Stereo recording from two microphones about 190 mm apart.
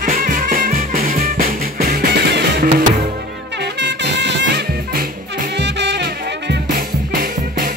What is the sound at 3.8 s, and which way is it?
Music, 65° right (ahead or behind).